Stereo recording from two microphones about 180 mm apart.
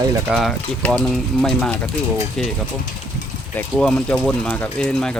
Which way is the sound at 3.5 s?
5° left (ahead or behind).